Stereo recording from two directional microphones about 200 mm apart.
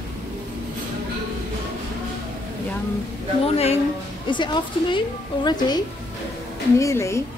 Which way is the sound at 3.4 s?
30° left (ahead or behind).